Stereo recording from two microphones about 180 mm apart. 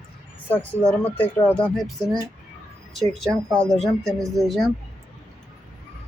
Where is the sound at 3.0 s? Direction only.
Centre (ahead or behind).